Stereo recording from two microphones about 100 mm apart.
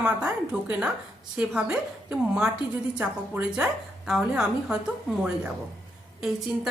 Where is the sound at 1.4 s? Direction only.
10° right (ahead or behind).